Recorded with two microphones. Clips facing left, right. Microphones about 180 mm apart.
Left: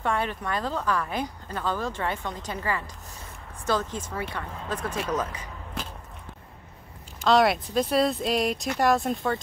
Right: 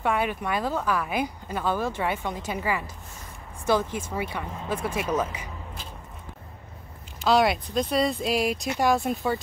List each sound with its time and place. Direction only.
0.0 s speech: 10° right (ahead or behind)
5.8 s a sound: 80° left
7.2 s speech: centre (ahead or behind)